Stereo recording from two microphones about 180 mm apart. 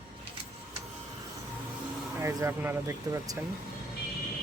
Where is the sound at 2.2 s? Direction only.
15° right (ahead or behind).